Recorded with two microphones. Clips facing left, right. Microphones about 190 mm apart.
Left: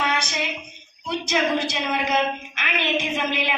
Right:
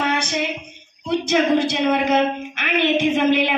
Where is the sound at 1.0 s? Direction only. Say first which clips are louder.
Right 5 dB; 55° right (ahead or behind).